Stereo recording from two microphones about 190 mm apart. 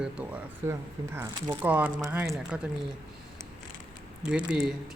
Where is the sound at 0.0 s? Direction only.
5° right (ahead or behind).